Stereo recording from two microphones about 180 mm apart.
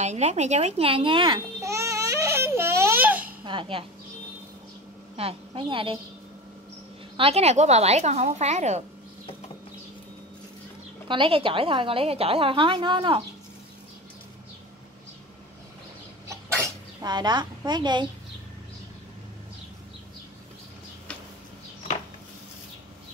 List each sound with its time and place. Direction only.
0.0 s a woman's voice: 40° right (ahead or behind)
1.6 s baby cry: 15° right (ahead or behind)
3.4 s a woman's voice: 30° right (ahead or behind)
5.1 s a woman's voice: 30° right (ahead or behind)
7.2 s a woman's voice: 35° right (ahead or behind)
11.1 s a woman's voice: 30° right (ahead or behind)
16.6 s speech: 25° right (ahead or behind)